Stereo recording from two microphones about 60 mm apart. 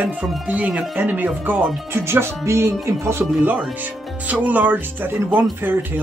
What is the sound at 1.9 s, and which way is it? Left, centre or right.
Speech, right.